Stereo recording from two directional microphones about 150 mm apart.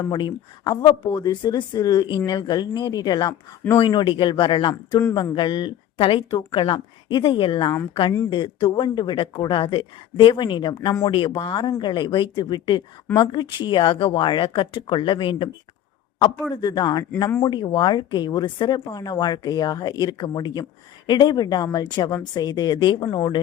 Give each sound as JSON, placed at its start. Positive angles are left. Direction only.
{"t": 0.0, "sound": "speech", "side_deg": 30}
{"t": 16.6, "sound": "speech", "side_deg": 30}